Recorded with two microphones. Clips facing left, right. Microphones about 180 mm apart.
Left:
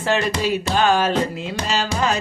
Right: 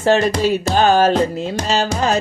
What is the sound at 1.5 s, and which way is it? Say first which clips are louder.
Carnatic music: right 2 dB; 45° right (ahead or behind).